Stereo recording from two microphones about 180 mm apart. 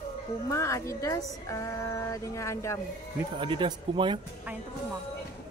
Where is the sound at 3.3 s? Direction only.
25° right (ahead or behind).